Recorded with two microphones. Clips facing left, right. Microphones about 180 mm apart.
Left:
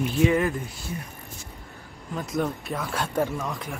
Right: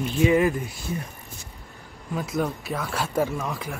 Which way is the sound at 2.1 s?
5° right (ahead or behind).